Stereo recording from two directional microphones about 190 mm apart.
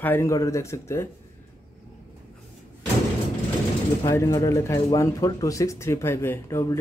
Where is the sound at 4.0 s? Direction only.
15° left (ahead or behind).